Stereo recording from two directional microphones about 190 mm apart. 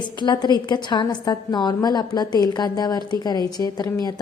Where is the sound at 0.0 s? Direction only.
25° left (ahead or behind).